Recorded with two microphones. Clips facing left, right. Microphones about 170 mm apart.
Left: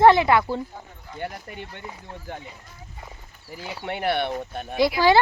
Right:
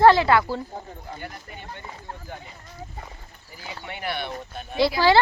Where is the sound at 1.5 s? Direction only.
60° left (ahead or behind).